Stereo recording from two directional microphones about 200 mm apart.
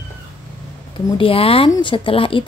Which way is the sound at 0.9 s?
25° left (ahead or behind).